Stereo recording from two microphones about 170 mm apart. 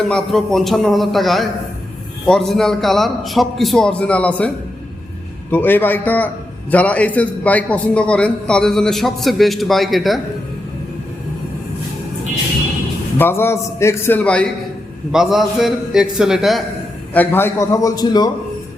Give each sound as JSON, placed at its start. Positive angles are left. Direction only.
{"t": 0.0, "sound": "a man's voice", "side_deg": 5}
{"t": 13.1, "sound": "a man's voice", "side_deg": 15}
{"t": 17.2, "sound": "a man's voice", "side_deg": 15}